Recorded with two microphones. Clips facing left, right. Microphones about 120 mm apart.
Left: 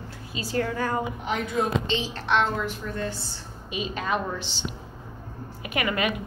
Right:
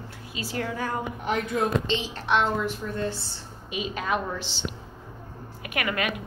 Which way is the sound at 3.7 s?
5° right (ahead or behind).